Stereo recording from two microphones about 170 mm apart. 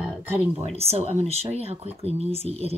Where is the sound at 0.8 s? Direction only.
40° right (ahead or behind).